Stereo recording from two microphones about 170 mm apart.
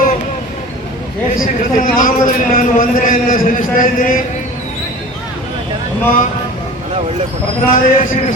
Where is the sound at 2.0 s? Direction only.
50° left (ahead or behind).